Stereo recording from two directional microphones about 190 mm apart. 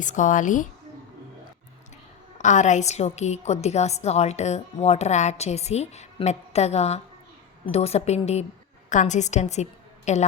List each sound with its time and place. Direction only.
0.0 s a woman's voice: 40° left (ahead or behind)
2.4 s a woman's voice: 40° left (ahead or behind)